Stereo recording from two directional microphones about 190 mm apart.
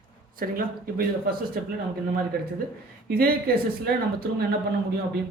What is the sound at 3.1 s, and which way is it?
A man's voice, 50° right (ahead or behind).